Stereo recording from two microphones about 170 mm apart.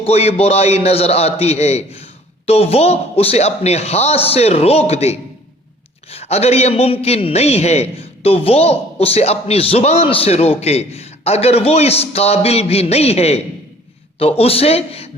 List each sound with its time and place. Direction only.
0.0 s a man's voice: 35° left (ahead or behind)